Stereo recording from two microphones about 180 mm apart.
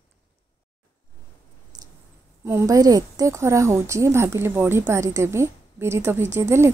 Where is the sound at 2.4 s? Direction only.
15° right (ahead or behind).